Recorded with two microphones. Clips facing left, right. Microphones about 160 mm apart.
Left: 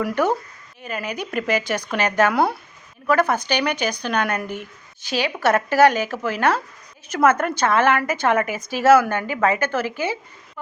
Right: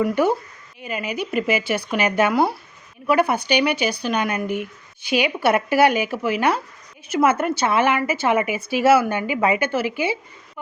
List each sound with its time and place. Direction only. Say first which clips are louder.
0.1 s a woman's voice: right 1 dB; 10° right (ahead or behind)
4.4 s speech: right 6 dB; 55° right (ahead or behind)
5.0 s a woman's voice: right 1 dB; 10° right (ahead or behind)